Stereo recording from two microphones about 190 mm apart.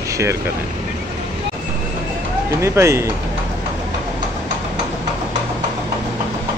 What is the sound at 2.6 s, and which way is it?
Speech, 15° right (ahead or behind).